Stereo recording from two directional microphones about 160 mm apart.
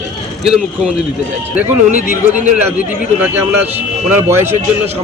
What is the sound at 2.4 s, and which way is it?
Speech, 10° right (ahead or behind).